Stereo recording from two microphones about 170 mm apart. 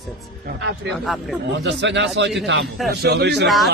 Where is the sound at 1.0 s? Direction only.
Centre (ahead or behind).